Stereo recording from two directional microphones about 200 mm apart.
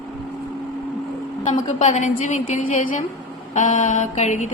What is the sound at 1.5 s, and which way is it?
A woman's voice, 35° left (ahead or behind).